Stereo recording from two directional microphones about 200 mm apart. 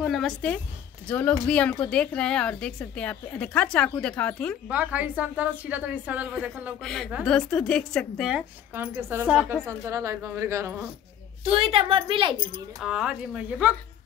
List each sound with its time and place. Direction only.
0.0 s a woman's voice: centre (ahead or behind)
4.6 s a woman's voice: 5° right (ahead or behind)
9.7 s a woman's voice: 15° right (ahead or behind)
11.4 s speech: 25° right (ahead or behind)
12.8 s a woman's voice: 5° right (ahead or behind)